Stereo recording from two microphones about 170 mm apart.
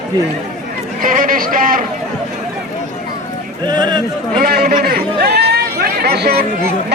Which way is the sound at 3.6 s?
25° right (ahead or behind).